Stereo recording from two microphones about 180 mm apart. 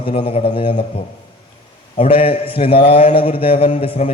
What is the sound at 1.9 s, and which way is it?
A man's voice, 35° left (ahead or behind).